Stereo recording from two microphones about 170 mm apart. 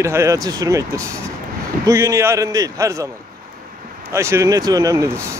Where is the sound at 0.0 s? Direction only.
15° right (ahead or behind).